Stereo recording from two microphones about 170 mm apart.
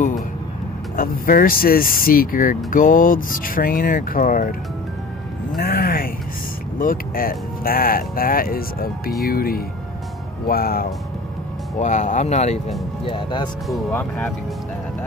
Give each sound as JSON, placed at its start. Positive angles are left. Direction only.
{"t": 0.9, "sound": "speech", "side_deg": 55}
{"t": 5.6, "sound": "speech", "side_deg": 60}
{"t": 11.8, "sound": "speech", "side_deg": 45}
{"t": 13.0, "sound": "speech", "side_deg": 30}
{"t": 13.9, "sound": "speech", "side_deg": 10}